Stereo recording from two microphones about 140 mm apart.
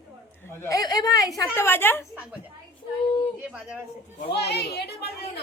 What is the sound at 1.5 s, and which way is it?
Speech, 15° left (ahead or behind).